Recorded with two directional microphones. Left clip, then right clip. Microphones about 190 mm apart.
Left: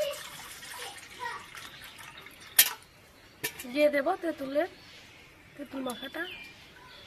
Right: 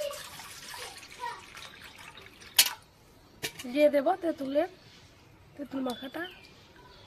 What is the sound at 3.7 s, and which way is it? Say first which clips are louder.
Speech: right 2 dB; 25° right (ahead or behind).